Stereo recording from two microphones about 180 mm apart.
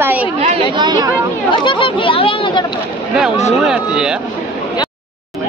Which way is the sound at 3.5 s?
5° right (ahead or behind).